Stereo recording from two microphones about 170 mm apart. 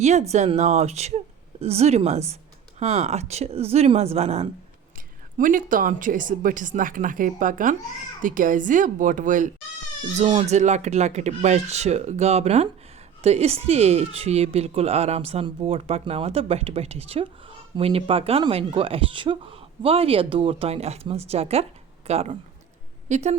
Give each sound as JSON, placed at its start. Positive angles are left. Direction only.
{"t": 0.0, "sound": "speech", "side_deg": -40}
{"t": 5.4, "sound": "speech", "side_deg": -50}